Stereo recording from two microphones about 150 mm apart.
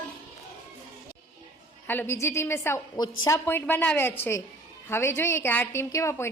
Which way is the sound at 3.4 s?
15° left (ahead or behind).